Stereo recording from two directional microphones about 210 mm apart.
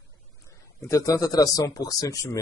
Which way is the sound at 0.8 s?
15° left (ahead or behind).